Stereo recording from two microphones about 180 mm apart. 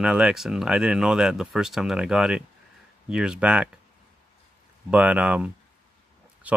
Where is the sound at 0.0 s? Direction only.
5° right (ahead or behind).